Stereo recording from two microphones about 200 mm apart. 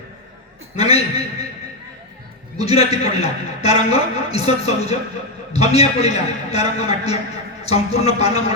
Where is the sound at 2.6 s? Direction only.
30° left (ahead or behind).